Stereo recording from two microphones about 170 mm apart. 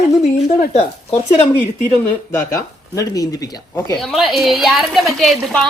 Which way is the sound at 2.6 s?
20° left (ahead or behind).